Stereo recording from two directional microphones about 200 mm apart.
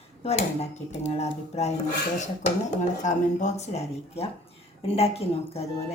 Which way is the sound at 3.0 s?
35° left (ahead or behind).